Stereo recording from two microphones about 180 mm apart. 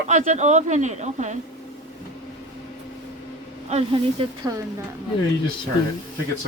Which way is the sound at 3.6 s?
35° right (ahead or behind).